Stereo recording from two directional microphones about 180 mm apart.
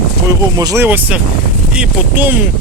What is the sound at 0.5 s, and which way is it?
Speech, 20° right (ahead or behind).